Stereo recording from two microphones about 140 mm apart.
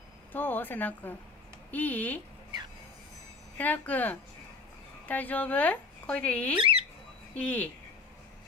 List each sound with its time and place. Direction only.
0.3 s speech: 15° left (ahead or behind)
3.5 s speech: 10° left (ahead or behind)
6.6 s squawk: 40° right (ahead or behind)
7.3 s speech: 10° left (ahead or behind)